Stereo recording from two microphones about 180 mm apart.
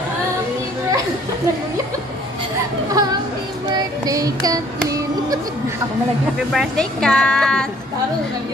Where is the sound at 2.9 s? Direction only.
20° right (ahead or behind).